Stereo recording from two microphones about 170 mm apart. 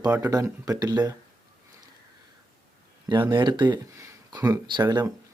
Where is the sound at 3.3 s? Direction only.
25° right (ahead or behind).